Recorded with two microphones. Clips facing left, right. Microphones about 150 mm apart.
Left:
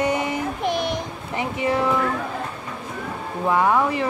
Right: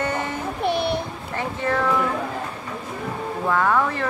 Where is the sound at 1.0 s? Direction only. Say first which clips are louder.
Even; 15° left (ahead or behind).